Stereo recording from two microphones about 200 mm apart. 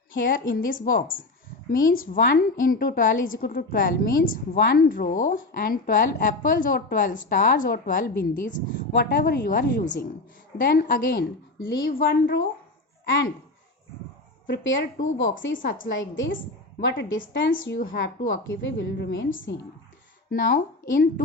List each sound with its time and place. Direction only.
0.1 s a woman's voice: 45° left (ahead or behind)
14.4 s a woman's voice: 65° left (ahead or behind)
18.3 s a woman's voice: 70° left (ahead or behind)
20.3 s speech: 45° left (ahead or behind)